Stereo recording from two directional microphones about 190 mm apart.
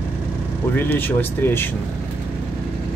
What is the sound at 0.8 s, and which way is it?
Speech, 10° left (ahead or behind).